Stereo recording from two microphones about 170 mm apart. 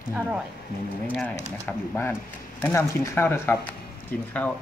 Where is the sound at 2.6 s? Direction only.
15° left (ahead or behind).